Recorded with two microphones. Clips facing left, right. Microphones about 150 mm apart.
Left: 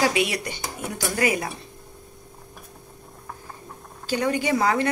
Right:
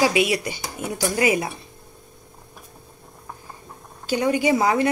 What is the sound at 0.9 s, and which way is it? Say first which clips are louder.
Speech: right 3 dB; 20° right (ahead or behind).